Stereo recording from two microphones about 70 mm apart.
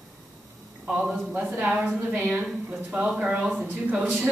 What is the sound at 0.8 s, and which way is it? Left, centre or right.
A man's voice, centre.